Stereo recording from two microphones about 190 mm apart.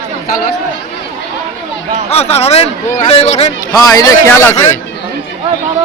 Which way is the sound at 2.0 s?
35° left (ahead or behind).